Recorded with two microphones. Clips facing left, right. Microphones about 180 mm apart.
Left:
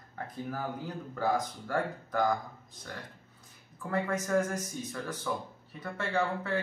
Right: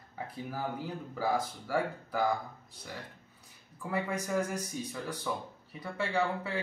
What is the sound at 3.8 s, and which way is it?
Speech, 10° right (ahead or behind).